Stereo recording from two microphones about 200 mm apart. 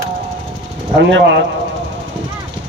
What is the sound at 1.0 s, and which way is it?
Speech, 60° right (ahead or behind).